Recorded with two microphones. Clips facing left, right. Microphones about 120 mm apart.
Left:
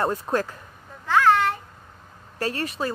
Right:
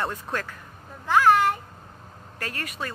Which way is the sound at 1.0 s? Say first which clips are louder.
Even; 15° right (ahead or behind).